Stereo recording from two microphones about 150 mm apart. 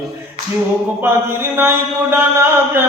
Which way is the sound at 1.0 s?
15° right (ahead or behind).